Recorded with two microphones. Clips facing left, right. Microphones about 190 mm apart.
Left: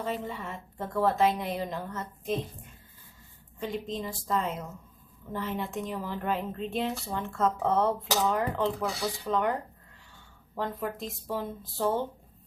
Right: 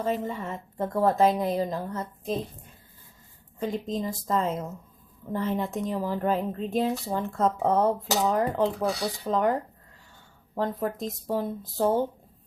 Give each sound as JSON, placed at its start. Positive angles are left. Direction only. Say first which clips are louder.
{"t": 0.0, "sound": "a woman's voice", "louder": "right 5 dB", "side_deg": -45}
{"t": 3.6, "sound": "a woman's voice", "louder": "right 4 dB", "side_deg": -40}
{"t": 10.5, "sound": "a woman's voice", "louder": "right 5 dB", "side_deg": -40}